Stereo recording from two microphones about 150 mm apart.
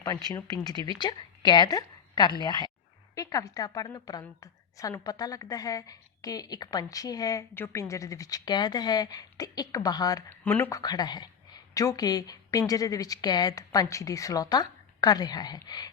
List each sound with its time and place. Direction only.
0.0 s a woman's voice: 25° left (ahead or behind)
10.2 s speech: 10° left (ahead or behind)
10.7 s a woman's voice: 25° left (ahead or behind)